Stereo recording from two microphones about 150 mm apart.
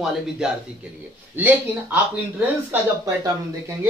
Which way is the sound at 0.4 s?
5° right (ahead or behind).